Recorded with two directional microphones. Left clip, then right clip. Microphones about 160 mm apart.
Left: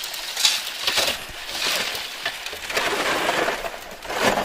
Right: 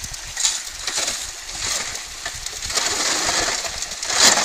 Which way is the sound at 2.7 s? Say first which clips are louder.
Even; 20° left (ahead or behind).